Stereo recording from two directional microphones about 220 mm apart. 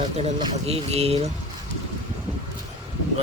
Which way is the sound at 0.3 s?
30° right (ahead or behind).